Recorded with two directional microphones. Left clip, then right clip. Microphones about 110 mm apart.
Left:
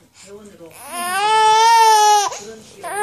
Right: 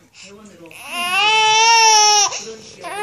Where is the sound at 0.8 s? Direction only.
35° left (ahead or behind).